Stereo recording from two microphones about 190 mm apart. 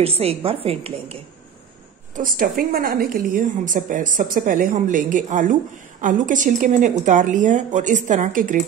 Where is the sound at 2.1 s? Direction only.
45° right (ahead or behind).